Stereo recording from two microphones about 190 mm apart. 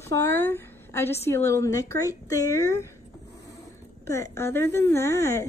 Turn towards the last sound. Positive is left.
turn(degrees=15)  # may be behind; listen again after turning